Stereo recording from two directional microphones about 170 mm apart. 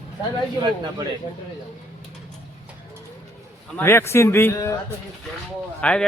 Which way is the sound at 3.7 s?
15° left (ahead or behind).